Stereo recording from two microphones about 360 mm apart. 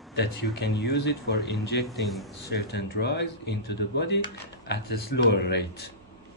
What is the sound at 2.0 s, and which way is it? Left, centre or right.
Speech, centre.